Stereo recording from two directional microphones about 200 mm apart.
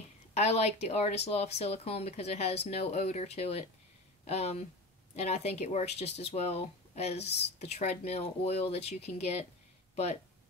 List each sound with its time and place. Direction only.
0.3 s speech: 30° left (ahead or behind)